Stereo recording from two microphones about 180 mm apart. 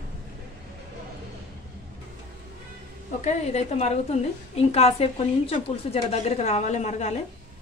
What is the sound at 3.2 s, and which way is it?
A woman's voice, 35° left (ahead or behind).